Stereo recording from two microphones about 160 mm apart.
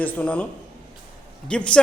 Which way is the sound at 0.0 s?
10° left (ahead or behind).